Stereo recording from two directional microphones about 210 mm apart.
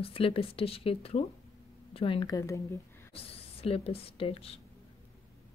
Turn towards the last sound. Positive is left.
turn(degrees=25)  # may be behind; listen again after turning